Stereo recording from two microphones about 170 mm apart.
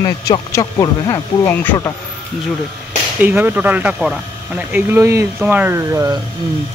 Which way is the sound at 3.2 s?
10° right (ahead or behind).